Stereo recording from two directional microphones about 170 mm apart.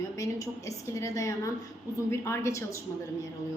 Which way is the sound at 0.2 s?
20° left (ahead or behind).